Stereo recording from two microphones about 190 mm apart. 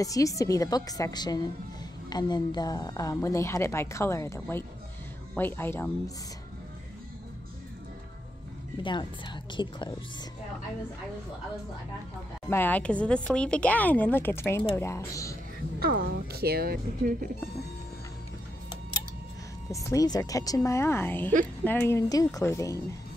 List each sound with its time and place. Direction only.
0.0 s speech: 15° left (ahead or behind)
8.8 s a woman's voice: 25° left (ahead or behind)
12.4 s speech: 10° left (ahead or behind)
15.8 s speech: 55° right (ahead or behind)
19.7 s speech: 15° left (ahead or behind)